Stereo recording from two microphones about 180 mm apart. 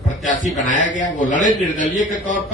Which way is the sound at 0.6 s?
45° left (ahead or behind).